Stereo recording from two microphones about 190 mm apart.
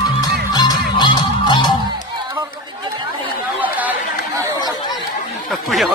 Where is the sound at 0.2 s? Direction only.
20° left (ahead or behind).